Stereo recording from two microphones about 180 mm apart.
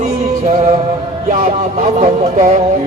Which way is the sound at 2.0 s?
40° right (ahead or behind).